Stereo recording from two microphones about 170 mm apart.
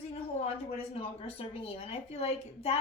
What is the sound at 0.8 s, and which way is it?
A woman's voice, 35° left (ahead or behind).